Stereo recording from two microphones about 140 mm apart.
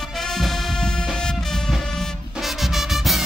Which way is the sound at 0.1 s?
Centre (ahead or behind).